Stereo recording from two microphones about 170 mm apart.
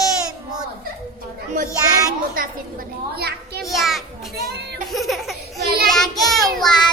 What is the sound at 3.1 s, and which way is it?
Speech, 65° right (ahead or behind).